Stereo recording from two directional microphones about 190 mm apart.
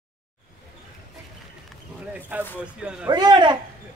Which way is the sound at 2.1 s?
10° right (ahead or behind).